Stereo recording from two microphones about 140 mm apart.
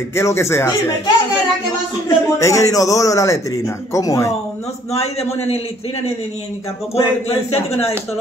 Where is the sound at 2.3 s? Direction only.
20° left (ahead or behind).